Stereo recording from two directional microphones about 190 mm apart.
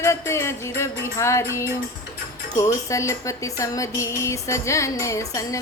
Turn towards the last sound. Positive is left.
turn(degrees=15)  # may be behind; listen again after turning